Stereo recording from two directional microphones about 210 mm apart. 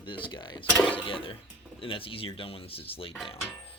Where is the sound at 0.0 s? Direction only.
25° left (ahead or behind).